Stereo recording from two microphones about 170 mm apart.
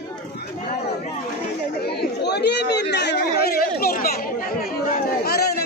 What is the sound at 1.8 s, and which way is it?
A man's voice, 75° left (ahead or behind).